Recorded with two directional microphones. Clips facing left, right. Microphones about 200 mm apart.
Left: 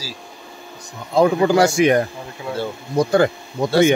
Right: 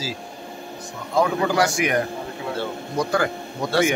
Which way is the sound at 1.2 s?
30° left (ahead or behind).